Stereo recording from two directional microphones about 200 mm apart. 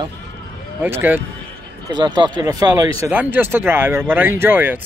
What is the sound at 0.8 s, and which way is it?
Speech, 10° right (ahead or behind).